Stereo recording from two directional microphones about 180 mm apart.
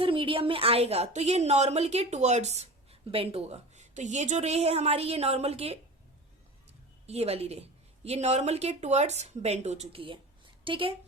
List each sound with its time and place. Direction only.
0.0 s a woman's voice: 30° right (ahead or behind)
7.1 s a woman's voice: 35° right (ahead or behind)